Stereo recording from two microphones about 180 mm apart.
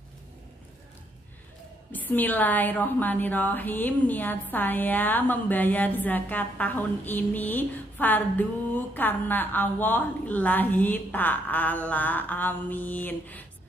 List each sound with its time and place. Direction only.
1.9 s a woman's voice: 10° left (ahead or behind)